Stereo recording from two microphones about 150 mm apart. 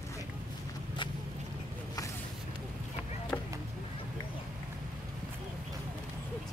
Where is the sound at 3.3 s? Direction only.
10° left (ahead or behind).